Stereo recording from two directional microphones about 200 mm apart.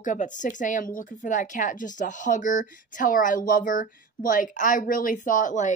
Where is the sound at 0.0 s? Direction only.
40° left (ahead or behind).